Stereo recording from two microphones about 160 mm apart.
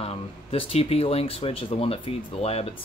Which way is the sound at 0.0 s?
35° left (ahead or behind).